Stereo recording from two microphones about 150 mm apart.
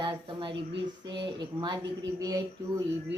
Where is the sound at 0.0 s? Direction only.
30° right (ahead or behind).